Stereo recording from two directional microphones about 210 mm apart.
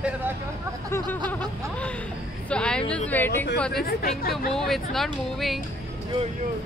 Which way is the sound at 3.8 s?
45° left (ahead or behind).